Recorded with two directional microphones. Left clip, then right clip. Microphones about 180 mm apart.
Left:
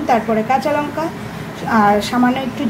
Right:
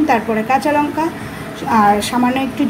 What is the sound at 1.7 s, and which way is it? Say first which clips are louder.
Speech: right 1 dB; 5° right (ahead or behind).